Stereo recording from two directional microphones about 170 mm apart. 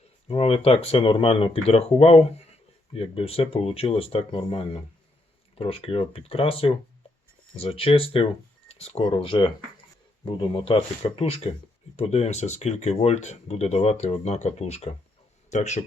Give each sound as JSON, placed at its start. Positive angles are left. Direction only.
{"t": 0.3, "sound": "speech", "side_deg": 35}